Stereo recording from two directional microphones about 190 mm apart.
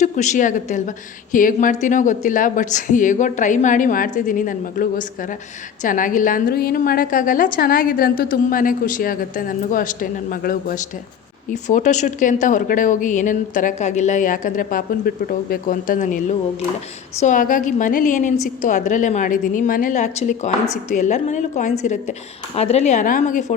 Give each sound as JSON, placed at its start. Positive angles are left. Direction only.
{"t": 0.0, "sound": "a woman's voice", "side_deg": 40}